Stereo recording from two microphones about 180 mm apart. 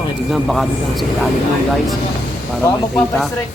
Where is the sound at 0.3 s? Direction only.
Centre (ahead or behind).